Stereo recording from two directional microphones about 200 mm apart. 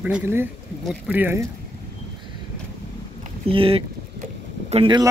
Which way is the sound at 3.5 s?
25° right (ahead or behind).